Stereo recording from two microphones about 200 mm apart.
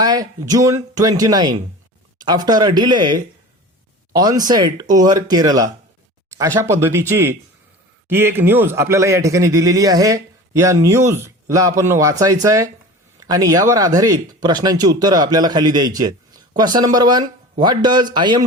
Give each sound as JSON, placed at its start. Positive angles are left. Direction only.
{"t": 0.0, "sound": "a man's voice", "side_deg": -20}